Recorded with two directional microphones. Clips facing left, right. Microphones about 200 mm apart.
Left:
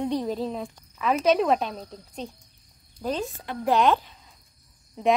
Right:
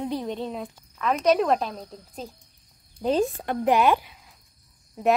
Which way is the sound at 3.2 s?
55° right (ahead or behind).